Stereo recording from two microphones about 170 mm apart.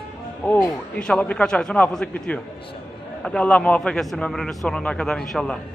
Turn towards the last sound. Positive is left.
turn(degrees=5)  # may be behind; listen again after turning